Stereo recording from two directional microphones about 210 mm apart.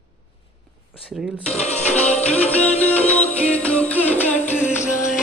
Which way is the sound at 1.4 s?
30° left (ahead or behind).